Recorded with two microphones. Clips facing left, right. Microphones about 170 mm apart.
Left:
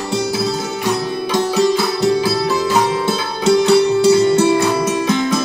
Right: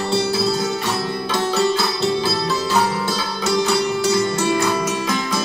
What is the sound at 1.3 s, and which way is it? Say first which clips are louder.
Music: left 4 dB; 15° left (ahead or behind).